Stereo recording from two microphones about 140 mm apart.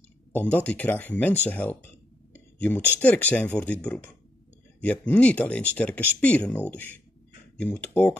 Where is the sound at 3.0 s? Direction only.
10° left (ahead or behind).